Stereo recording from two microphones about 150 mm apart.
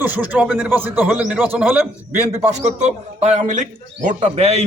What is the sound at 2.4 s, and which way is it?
A man's voice, 50° right (ahead or behind).